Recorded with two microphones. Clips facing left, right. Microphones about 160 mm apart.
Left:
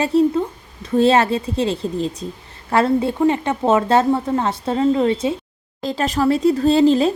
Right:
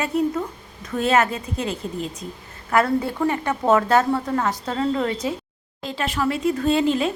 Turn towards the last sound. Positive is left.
turn(degrees=35)  # may be behind; listen again after turning